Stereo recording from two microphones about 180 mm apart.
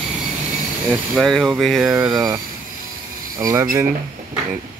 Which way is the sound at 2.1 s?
20° right (ahead or behind).